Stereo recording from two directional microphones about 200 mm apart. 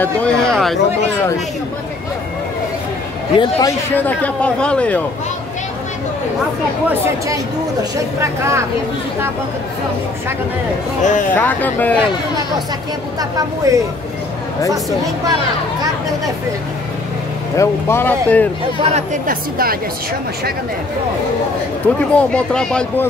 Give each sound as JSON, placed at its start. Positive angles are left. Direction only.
{"t": 0.0, "sound": "speech", "side_deg": 5}
{"t": 3.3, "sound": "speech", "side_deg": 15}
{"t": 8.2, "sound": "speech", "side_deg": -15}
{"t": 11.0, "sound": "speech", "side_deg": 40}
{"t": 11.3, "sound": "speech", "side_deg": 10}
{"t": 13.7, "sound": "speech", "side_deg": -15}
{"t": 17.6, "sound": "speech", "side_deg": 10}
{"t": 18.8, "sound": "a woman's voice", "side_deg": -35}
{"t": 21.8, "sound": "speech", "side_deg": 5}